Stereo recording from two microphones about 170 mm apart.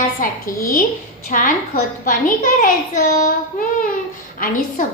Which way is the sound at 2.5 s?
55° left (ahead or behind).